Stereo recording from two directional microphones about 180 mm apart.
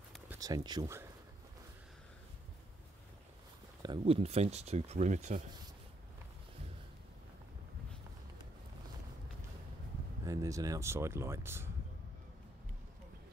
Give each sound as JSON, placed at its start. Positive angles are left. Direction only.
{"t": 0.3, "sound": "speech", "side_deg": -20}
{"t": 3.8, "sound": "speech", "side_deg": -30}
{"t": 10.2, "sound": "speech", "side_deg": -20}